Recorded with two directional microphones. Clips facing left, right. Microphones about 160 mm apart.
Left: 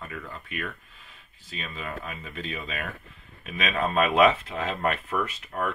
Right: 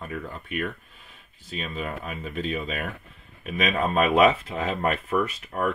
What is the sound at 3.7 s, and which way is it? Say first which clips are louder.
Speech: right 2 dB; 10° right (ahead or behind).